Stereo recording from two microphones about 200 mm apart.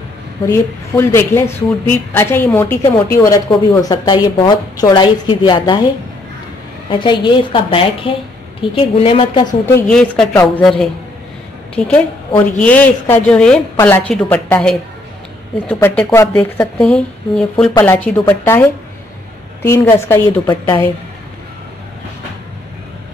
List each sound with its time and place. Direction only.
0.5 s a woman's voice: 15° left (ahead or behind)
6.9 s a woman's voice: 25° left (ahead or behind)
9.7 s a woman's voice: 10° left (ahead or behind)
16.0 s a woman's voice: 10° left (ahead or behind)
20.4 s a woman's voice: 20° left (ahead or behind)